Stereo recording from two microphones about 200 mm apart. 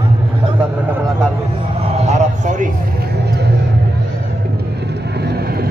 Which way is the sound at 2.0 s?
35° right (ahead or behind).